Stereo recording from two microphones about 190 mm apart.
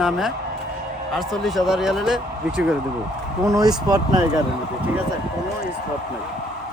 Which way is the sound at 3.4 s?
20° right (ahead or behind).